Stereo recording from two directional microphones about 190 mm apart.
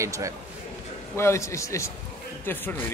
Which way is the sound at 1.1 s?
15° left (ahead or behind).